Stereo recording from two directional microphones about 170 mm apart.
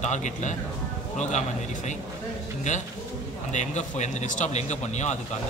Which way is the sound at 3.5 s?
45° left (ahead or behind).